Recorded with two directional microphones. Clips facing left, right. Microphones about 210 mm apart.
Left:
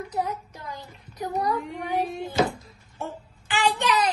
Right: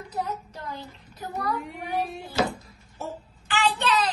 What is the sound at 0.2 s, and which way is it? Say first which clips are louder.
Child singing: even; 10° left (ahead or behind).